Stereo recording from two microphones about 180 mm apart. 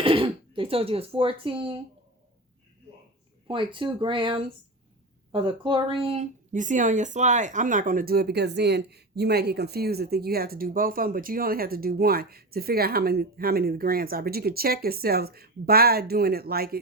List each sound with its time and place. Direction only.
0.0 s speech: 30° right (ahead or behind)
3.4 s speech: 30° right (ahead or behind); by 16.8 s 60° right (ahead or behind)